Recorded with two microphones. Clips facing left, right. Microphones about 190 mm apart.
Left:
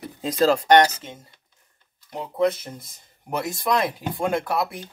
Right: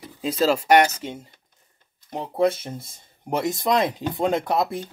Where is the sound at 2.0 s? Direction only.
30° right (ahead or behind).